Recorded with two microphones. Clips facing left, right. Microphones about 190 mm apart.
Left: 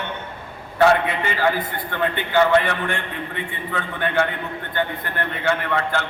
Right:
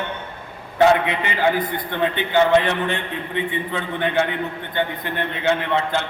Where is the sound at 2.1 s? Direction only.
20° right (ahead or behind).